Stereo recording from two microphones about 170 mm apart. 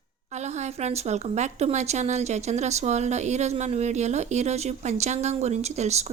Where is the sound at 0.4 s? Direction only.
40° right (ahead or behind).